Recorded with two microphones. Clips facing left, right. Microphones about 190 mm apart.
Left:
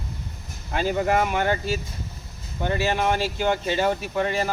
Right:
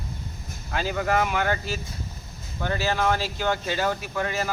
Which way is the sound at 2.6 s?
20° left (ahead or behind).